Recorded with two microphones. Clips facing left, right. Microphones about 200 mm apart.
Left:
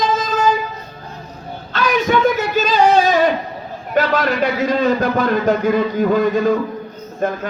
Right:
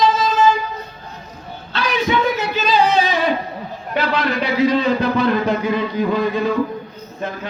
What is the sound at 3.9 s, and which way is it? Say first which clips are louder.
A man's voice: left 3 dB; 45° left (ahead or behind).